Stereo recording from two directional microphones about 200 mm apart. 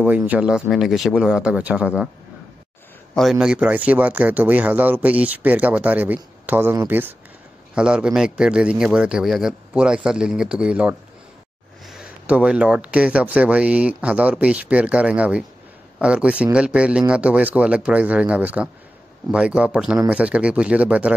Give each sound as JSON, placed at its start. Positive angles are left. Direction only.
{"t": 0.0, "sound": "a man's voice", "side_deg": -10}
{"t": 3.2, "sound": "a man's voice", "side_deg": 0}